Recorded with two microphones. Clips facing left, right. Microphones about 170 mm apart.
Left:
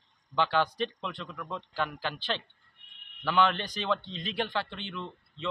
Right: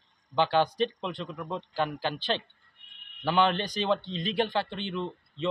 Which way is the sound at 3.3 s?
30° right (ahead or behind).